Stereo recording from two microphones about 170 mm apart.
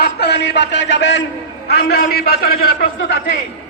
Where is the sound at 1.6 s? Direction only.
70° left (ahead or behind).